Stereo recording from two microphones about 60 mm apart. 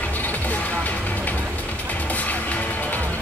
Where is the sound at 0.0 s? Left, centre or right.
Left.